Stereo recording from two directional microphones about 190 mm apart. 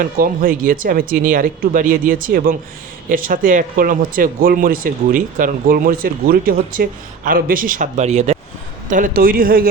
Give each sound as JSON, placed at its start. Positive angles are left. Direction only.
{"t": 0.0, "sound": "speech", "side_deg": -50}